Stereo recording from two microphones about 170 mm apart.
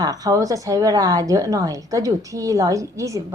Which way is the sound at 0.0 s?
20° right (ahead or behind).